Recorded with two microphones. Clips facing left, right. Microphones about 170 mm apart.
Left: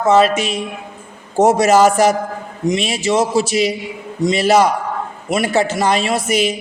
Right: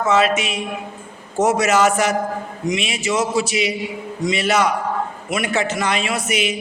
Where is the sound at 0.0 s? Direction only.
35° left (ahead or behind).